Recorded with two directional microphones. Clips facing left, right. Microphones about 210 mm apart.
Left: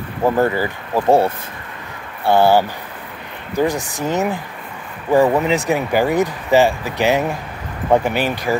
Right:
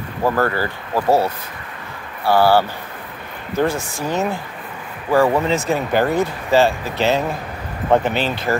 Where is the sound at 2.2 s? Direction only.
20° left (ahead or behind).